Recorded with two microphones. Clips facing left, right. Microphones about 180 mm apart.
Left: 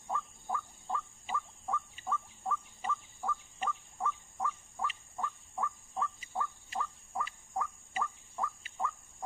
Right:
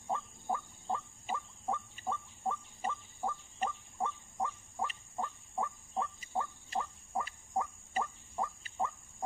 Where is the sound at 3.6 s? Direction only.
40° right (ahead or behind).